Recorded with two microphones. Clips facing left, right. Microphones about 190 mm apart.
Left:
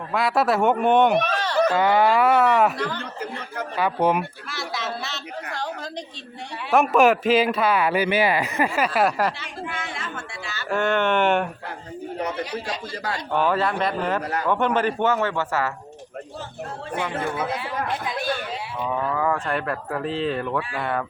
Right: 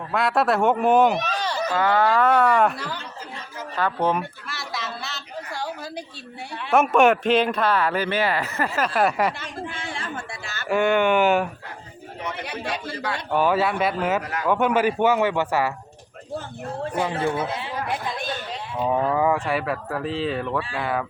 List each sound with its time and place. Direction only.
0.1 s speech: centre (ahead or behind)
1.7 s speech: 15° left (ahead or behind)
3.8 s speech: 10° left (ahead or behind)
4.4 s speech: centre (ahead or behind)
6.7 s speech: centre (ahead or behind)
10.4 s speech: 50° right (ahead or behind)
10.7 s speech: 10° right (ahead or behind)
12.5 s speech: 60° right (ahead or behind)
13.3 s speech: 5° right (ahead or behind)
17.0 s a man's voice: 30° right (ahead or behind)
19.2 s speech: 10° right (ahead or behind)